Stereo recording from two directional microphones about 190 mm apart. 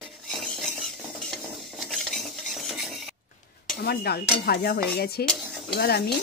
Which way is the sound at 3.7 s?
55° left (ahead or behind).